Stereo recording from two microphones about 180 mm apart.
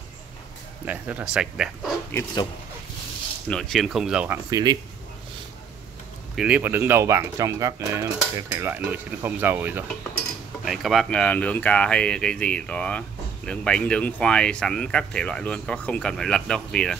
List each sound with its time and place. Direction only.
0.8 s speech: 10° right (ahead or behind)
3.4 s speech: 5° left (ahead or behind)
4.5 s speech: 20° right (ahead or behind)
6.3 s speech: 5° right (ahead or behind)